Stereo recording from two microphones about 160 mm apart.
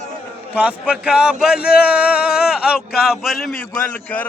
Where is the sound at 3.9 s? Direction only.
10° left (ahead or behind).